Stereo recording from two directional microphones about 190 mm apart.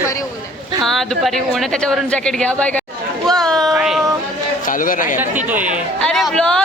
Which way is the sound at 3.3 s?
Centre (ahead or behind).